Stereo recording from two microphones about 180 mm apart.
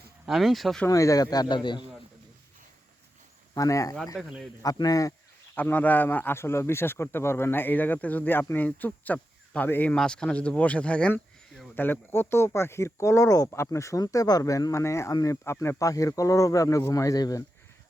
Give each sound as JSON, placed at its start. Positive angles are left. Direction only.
{"t": 0.3, "sound": "speech", "side_deg": 0}
{"t": 0.9, "sound": "speech", "side_deg": 20}
{"t": 3.5, "sound": "speech", "side_deg": 20}
{"t": 4.2, "sound": "speech", "side_deg": 0}
{"t": 4.6, "sound": "speech", "side_deg": 20}
{"t": 5.5, "sound": "speech", "side_deg": 10}